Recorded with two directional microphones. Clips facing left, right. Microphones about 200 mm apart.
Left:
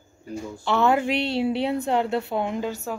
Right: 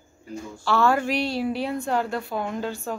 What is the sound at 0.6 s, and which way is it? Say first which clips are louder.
A woman's voice: left 1 dB; 20° left (ahead or behind).